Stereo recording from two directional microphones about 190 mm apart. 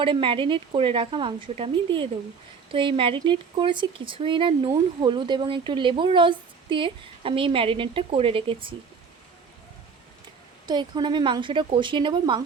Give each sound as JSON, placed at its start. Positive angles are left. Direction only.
{"t": 0.0, "sound": "speech", "side_deg": -25}
{"t": 10.7, "sound": "speech", "side_deg": -25}